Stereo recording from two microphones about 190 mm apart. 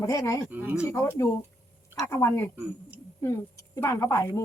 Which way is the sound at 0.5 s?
10° right (ahead or behind).